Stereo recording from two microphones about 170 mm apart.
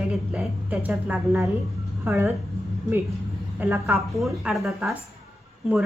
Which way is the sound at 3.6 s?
10° right (ahead or behind).